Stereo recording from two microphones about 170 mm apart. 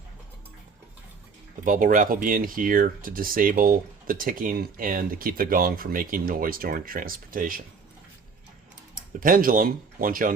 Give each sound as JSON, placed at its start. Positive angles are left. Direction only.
{"t": 1.6, "sound": "speech", "side_deg": -50}
{"t": 9.2, "sound": "speech", "side_deg": -55}